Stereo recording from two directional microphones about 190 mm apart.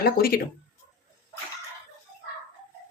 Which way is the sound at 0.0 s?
50° left (ahead or behind).